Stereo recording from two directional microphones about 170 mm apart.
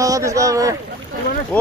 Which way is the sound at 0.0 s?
20° right (ahead or behind).